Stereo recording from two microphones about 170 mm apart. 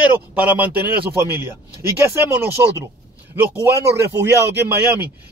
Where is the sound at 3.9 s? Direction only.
15° right (ahead or behind).